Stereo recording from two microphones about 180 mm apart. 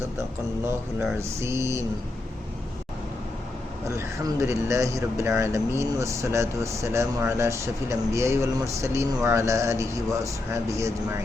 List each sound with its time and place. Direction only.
1.4 s speech: 15° right (ahead or behind)
3.8 s speech: 15° right (ahead or behind)